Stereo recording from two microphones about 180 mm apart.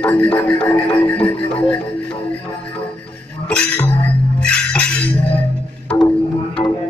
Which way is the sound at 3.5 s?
5° left (ahead or behind).